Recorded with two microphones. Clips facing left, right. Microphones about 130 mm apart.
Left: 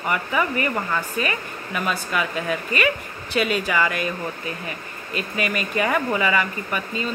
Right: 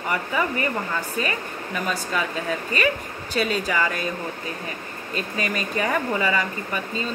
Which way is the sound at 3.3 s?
35° right (ahead or behind).